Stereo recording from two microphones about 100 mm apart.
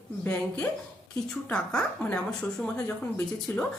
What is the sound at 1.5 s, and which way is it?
Speech, 10° left (ahead or behind).